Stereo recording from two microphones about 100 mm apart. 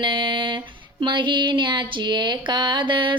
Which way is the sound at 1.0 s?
50° right (ahead or behind).